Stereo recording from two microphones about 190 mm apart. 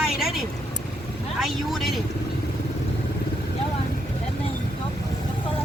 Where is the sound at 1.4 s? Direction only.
Centre (ahead or behind).